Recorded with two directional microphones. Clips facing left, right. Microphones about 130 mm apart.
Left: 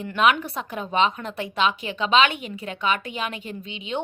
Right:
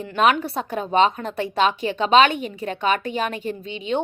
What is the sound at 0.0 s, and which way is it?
A woman's voice, 35° right (ahead or behind).